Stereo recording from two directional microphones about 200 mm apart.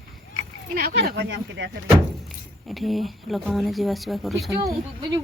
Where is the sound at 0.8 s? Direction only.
50° right (ahead or behind).